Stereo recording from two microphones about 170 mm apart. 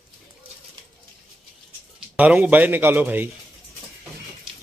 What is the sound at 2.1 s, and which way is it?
A man's voice, 10° right (ahead or behind).